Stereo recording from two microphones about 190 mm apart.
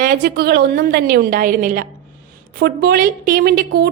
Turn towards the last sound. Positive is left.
turn(degrees=-55)  # may be behind; listen again after turning